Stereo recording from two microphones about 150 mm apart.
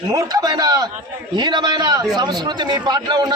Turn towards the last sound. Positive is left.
turn(degrees=-30)  # may be behind; listen again after turning